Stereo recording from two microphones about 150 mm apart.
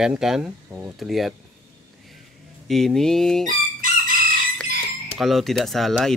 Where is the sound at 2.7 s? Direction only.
Centre (ahead or behind).